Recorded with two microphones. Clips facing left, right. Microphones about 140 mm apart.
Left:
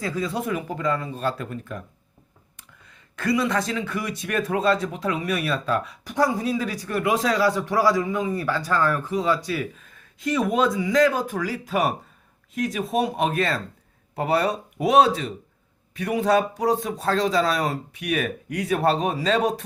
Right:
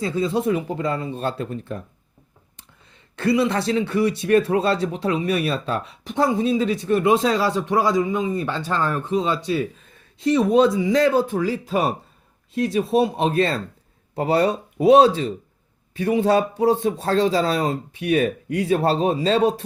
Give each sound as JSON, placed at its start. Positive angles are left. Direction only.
{"t": 0.0, "sound": "speech", "side_deg": -25}